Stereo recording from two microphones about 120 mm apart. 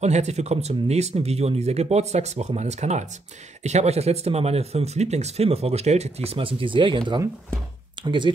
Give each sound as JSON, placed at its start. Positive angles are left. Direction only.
{"t": 0.0, "sound": "speech", "side_deg": -70}